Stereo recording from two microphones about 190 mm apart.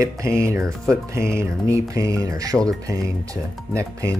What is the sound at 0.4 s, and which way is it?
Speech, 15° right (ahead or behind).